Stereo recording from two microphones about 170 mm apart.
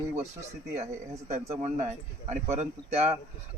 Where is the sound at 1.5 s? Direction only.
40° right (ahead or behind).